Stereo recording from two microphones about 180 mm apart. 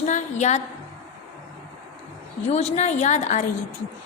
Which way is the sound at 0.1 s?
40° left (ahead or behind).